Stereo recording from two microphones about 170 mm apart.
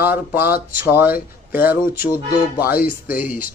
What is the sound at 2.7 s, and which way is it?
Speech, 60° left (ahead or behind).